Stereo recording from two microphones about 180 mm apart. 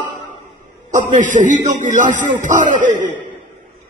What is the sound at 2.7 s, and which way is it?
Speech, 45° right (ahead or behind).